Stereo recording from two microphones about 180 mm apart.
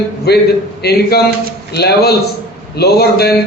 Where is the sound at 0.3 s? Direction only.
65° left (ahead or behind).